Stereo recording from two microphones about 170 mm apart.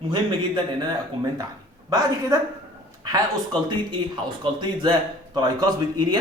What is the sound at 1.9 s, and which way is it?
Speech, 20° right (ahead or behind).